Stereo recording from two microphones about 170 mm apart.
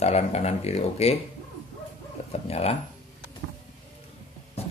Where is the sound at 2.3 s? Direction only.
35° left (ahead or behind).